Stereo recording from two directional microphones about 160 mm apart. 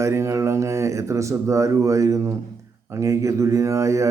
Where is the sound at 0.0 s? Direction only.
15° right (ahead or behind).